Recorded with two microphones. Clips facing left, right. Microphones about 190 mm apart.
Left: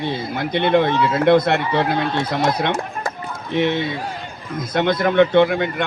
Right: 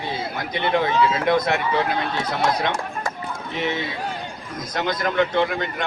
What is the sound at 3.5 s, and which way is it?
Speech, 65° left (ahead or behind).